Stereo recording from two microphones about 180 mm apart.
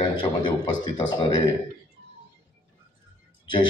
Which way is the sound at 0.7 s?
25° left (ahead or behind).